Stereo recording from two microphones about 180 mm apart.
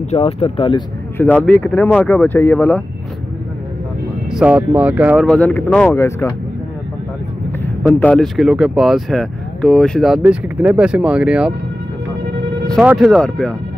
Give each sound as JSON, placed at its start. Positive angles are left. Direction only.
{"t": 0.1, "sound": "speech", "side_deg": 35}
{"t": 1.1, "sound": "speech", "side_deg": 10}
{"t": 4.3, "sound": "speech", "side_deg": -5}
{"t": 5.2, "sound": "speech", "side_deg": 5}
{"t": 8.0, "sound": "speech", "side_deg": 5}
{"t": 12.8, "sound": "speech", "side_deg": 0}